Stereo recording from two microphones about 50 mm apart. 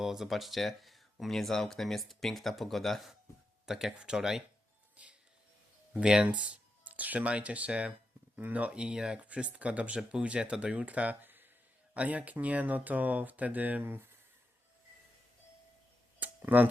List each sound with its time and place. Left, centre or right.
0.0 s speech: centre
3.9 s speech: centre
5.0 s music: right
5.9 s speech: centre
6.4 s speech: right
8.7 s speech: centre; by 11.4 s right
11.9 s speech: right
16.2 s a sound: right